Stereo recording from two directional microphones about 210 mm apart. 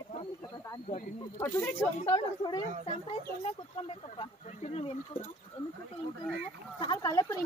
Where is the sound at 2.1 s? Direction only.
20° left (ahead or behind).